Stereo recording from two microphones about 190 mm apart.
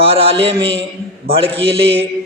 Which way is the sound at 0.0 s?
30° right (ahead or behind).